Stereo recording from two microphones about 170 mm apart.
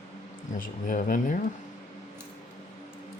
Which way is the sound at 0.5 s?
55° left (ahead or behind).